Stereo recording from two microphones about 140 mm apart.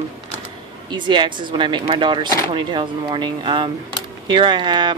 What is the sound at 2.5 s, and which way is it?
Speech, 35° right (ahead or behind).